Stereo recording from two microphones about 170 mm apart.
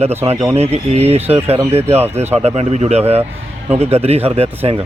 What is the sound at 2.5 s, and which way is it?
Speech, 40° right (ahead or behind).